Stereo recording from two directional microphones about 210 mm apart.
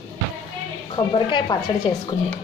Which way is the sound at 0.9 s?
20° left (ahead or behind).